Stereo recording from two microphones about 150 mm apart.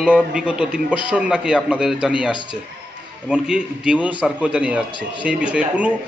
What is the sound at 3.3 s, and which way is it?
A man's voice, 5° right (ahead or behind).